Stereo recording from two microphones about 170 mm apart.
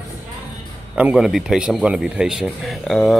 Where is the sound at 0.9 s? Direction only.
5° right (ahead or behind).